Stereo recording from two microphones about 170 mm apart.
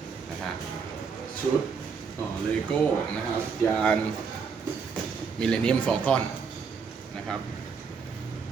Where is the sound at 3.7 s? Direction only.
5° left (ahead or behind).